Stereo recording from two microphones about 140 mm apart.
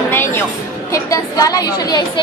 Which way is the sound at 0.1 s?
15° left (ahead or behind).